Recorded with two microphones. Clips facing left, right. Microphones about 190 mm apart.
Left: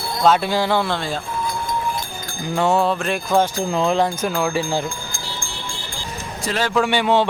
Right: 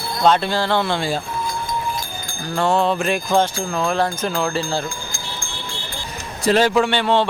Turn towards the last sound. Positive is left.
turn(degrees=10)  # may be behind; listen again after turning